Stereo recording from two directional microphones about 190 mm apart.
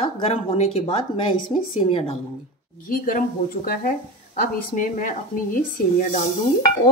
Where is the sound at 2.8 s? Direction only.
45° left (ahead or behind).